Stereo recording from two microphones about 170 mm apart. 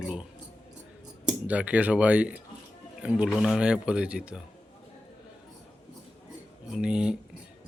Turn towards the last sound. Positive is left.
turn(degrees=-5)  # may be behind; listen again after turning